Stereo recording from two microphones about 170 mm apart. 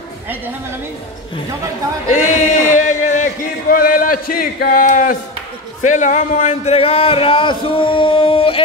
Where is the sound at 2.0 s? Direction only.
45° left (ahead or behind).